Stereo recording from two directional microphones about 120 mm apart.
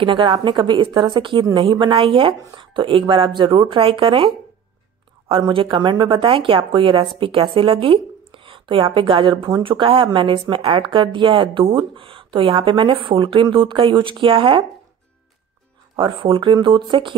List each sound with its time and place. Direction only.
0.0 s speech: 40° right (ahead or behind)
5.3 s speech: 45° right (ahead or behind)
16.0 s speech: 45° right (ahead or behind)